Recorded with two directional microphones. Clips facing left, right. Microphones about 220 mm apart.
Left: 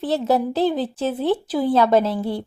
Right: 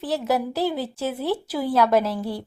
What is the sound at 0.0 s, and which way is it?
Speech, 25° left (ahead or behind).